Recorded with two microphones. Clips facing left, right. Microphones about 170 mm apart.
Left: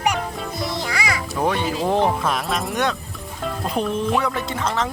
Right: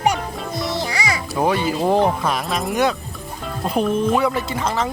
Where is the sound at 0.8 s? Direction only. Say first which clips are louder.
Right 1 dB; 25° right (ahead or behind).